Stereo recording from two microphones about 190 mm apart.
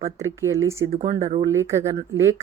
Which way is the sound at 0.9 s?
35° right (ahead or behind).